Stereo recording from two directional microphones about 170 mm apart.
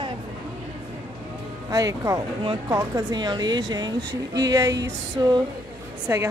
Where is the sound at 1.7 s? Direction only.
20° right (ahead or behind).